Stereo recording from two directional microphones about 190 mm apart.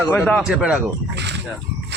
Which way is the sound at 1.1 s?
65° right (ahead or behind).